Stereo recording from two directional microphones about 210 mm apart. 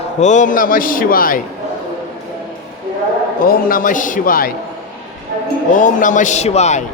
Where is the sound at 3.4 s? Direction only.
45° left (ahead or behind).